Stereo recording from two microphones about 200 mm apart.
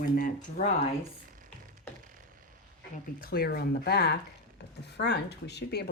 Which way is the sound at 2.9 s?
50° left (ahead or behind).